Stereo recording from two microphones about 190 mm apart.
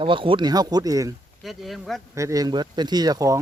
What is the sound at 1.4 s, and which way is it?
Speech, centre (ahead or behind).